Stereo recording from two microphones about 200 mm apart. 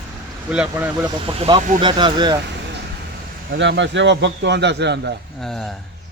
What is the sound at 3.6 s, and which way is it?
A man's voice, 65° right (ahead or behind).